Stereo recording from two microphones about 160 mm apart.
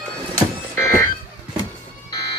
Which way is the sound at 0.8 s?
20° left (ahead or behind).